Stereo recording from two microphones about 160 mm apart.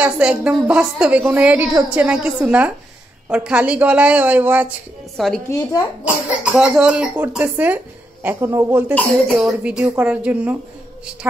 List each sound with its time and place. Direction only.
0.0 s speech: 5° right (ahead or behind)
5.1 s a woman's voice: centre (ahead or behind)
5.5 s speech: 20° left (ahead or behind)
6.0 s speech: 5° right (ahead or behind)
8.9 s speech: centre (ahead or behind)